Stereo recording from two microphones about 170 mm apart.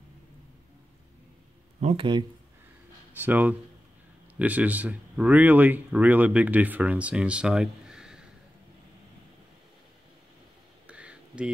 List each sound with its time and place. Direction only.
1.8 s speech: 35° right (ahead or behind)
3.3 s speech: 10° right (ahead or behind)
10.9 s a sound: 5° right (ahead or behind)